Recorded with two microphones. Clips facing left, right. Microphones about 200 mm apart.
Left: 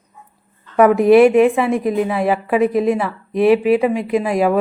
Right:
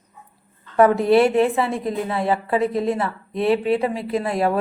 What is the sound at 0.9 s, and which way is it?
Speech, 20° left (ahead or behind).